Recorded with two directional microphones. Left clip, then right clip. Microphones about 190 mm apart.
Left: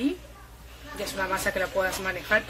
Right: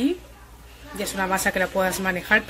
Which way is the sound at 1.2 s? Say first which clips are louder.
Right 5 dB; 40° right (ahead or behind).